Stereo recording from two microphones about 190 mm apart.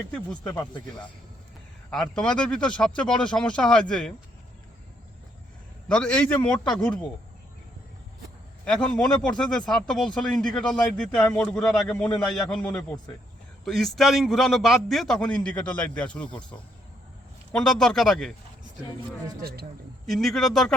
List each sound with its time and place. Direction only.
0.1 s speech: 5° left (ahead or behind)
1.9 s speech: 5° left (ahead or behind)
5.9 s a man's voice: 5° left (ahead or behind)
8.6 s speech: 5° left (ahead or behind)
19.4 s speech: 55° right (ahead or behind)
20.1 s speech: centre (ahead or behind)